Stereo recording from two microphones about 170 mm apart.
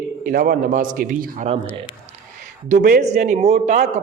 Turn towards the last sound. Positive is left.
turn(degrees=-40)  # may be behind; listen again after turning